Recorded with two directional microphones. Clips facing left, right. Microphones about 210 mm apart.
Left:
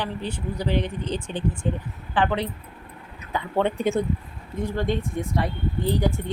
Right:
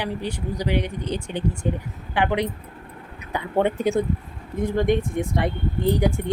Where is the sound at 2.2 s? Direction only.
15° right (ahead or behind).